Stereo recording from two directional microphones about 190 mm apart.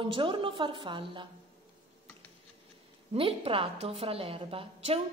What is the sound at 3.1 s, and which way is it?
A woman's voice, 30° right (ahead or behind).